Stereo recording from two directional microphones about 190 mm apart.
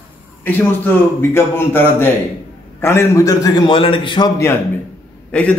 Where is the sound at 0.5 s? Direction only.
10° left (ahead or behind); by 4.3 s 25° left (ahead or behind).